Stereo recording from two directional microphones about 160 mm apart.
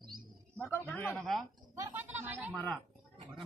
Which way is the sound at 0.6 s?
15° left (ahead or behind).